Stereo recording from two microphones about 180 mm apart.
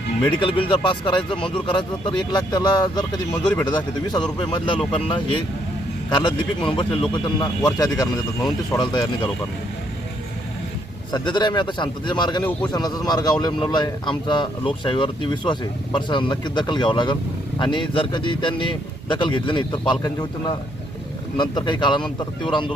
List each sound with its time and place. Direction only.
0.3 s a man's voice: 30° left (ahead or behind)
11.1 s a man's voice: 25° left (ahead or behind)
12.4 s a man's voice: 10° left (ahead or behind)
12.7 s a man's voice: 20° left (ahead or behind)